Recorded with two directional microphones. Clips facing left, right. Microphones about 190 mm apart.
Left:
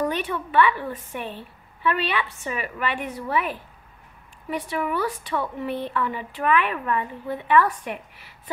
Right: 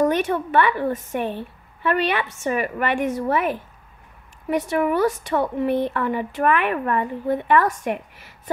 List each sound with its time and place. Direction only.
0.0 s a woman's voice: 45° right (ahead or behind)